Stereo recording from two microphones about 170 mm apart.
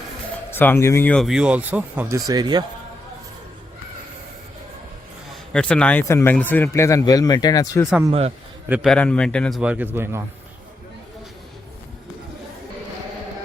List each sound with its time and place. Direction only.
0.5 s speech: 15° left (ahead or behind)
1.1 s speech: centre (ahead or behind)
2.1 s speech: 25° right (ahead or behind)
5.5 s speech: 5° left (ahead or behind); by 7.9 s 20° left (ahead or behind)
8.7 s speech: centre (ahead or behind)
9.6 s speech: 10° right (ahead or behind)